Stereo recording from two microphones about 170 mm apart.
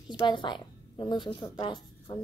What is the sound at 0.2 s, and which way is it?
A woman's voice, 25° left (ahead or behind).